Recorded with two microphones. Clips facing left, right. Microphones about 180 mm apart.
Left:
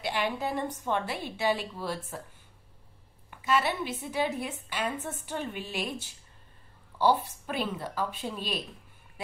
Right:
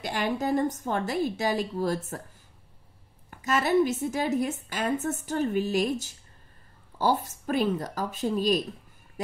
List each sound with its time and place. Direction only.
0.0 s a woman's voice: 45° right (ahead or behind)
3.3 s a woman's voice: 45° right (ahead or behind)